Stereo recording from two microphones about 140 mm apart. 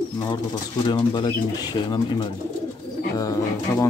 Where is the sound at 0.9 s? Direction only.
30° left (ahead or behind).